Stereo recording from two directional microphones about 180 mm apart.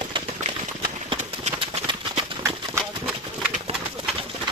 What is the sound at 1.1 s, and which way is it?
Clip-clop, 35° right (ahead or behind).